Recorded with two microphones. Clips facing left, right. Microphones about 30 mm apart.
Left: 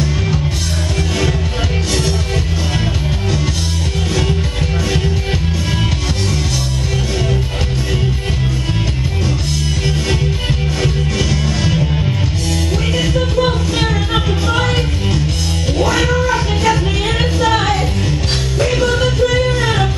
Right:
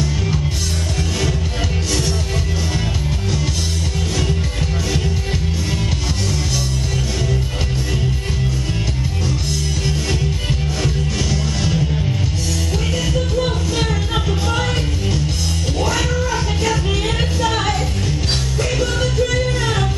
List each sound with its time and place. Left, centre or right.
10.8 s music: left
15.8 s music: left